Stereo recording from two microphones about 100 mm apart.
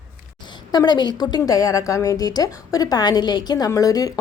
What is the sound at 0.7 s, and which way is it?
A woman's voice, 45° left (ahead or behind).